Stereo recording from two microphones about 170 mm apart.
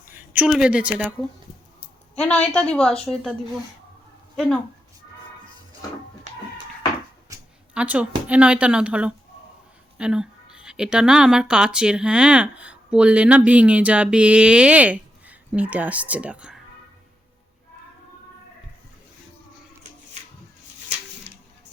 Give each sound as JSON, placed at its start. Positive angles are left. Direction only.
{"t": 0.1, "sound": "a woman's voice", "side_deg": -10}
{"t": 2.1, "sound": "a woman's voice", "side_deg": 5}
{"t": 7.3, "sound": "a sound", "side_deg": -20}
{"t": 7.7, "sound": "a woman's voice", "side_deg": -5}